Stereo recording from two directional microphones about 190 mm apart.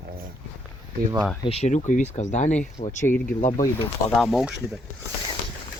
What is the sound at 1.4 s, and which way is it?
Speech, 30° left (ahead or behind).